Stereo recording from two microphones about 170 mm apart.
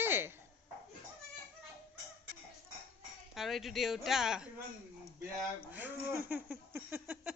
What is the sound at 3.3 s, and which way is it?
Speech, centre (ahead or behind).